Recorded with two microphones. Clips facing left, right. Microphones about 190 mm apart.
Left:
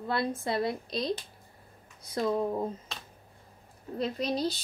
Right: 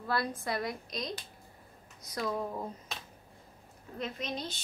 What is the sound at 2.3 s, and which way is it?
Speech, 25° left (ahead or behind).